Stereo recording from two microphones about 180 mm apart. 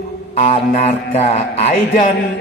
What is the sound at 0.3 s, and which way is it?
Speech, 40° left (ahead or behind).